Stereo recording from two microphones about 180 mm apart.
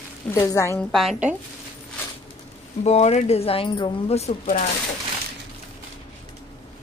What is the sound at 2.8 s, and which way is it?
Speech, 35° left (ahead or behind).